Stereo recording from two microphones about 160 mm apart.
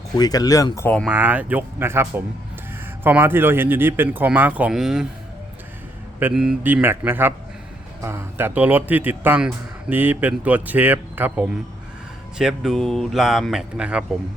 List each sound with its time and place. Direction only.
0.2 s speech: 25° left (ahead or behind)
0.8 s speech: 10° left (ahead or behind)
1.0 s a man's voice: 10° right (ahead or behind)
6.1 s a man's voice: 10° right (ahead or behind)